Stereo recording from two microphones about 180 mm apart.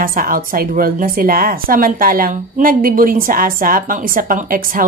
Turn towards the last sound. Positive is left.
turn(degrees=-50)  # may be behind; listen again after turning